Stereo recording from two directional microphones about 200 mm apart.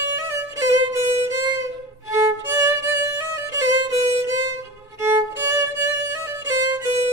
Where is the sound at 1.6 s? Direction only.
15° right (ahead or behind).